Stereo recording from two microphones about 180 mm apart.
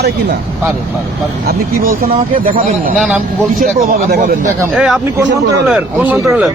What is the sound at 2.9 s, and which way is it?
Speech, 5° right (ahead or behind).